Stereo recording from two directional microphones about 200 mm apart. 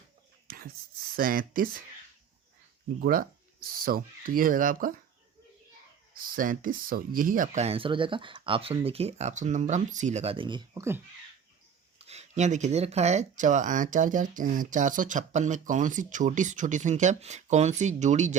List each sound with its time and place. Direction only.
0.4 s whispering: 45° right (ahead or behind)
1.1 s speech: 45° right (ahead or behind)
3.0 s speech: 45° right (ahead or behind)
6.1 s speech: 45° right (ahead or behind); by 11.0 s 15° right (ahead or behind)
11.9 s speech: 30° right (ahead or behind)